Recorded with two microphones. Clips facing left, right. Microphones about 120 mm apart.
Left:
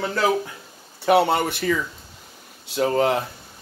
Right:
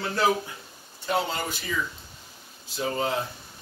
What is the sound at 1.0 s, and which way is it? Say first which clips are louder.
Speech: left 10 dB; 70° left (ahead or behind).